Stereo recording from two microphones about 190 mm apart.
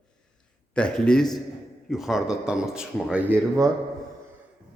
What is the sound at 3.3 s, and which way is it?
Speech, 15° right (ahead or behind).